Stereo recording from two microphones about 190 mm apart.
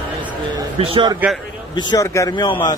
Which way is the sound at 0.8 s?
25° right (ahead or behind).